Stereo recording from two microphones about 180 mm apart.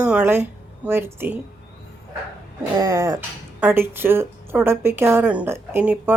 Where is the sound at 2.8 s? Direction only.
20° right (ahead or behind).